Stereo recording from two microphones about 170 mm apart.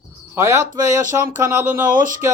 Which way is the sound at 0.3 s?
15° right (ahead or behind).